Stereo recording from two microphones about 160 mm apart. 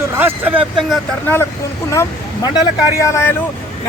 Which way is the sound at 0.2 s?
10° right (ahead or behind).